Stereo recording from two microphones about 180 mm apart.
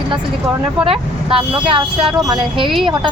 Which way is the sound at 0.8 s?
30° right (ahead or behind).